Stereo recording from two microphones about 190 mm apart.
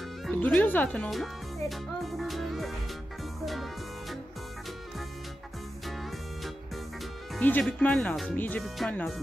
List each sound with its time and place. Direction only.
0.2 s music: 5° left (ahead or behind)
7.3 s speech: 5° left (ahead or behind)